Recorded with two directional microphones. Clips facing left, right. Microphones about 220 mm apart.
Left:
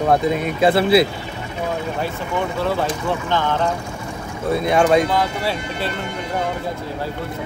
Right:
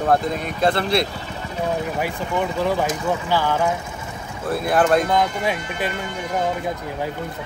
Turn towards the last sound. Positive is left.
turn(degrees=-15)  # may be behind; listen again after turning